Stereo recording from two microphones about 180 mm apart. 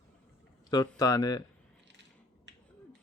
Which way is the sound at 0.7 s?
20° left (ahead or behind).